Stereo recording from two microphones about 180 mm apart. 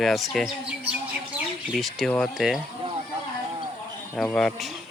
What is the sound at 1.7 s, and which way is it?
Speech, centre (ahead or behind).